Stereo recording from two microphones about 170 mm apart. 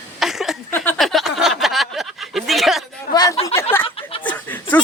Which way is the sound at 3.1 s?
25° left (ahead or behind).